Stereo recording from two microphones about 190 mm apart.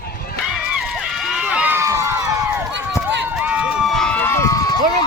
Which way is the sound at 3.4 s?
5° right (ahead or behind).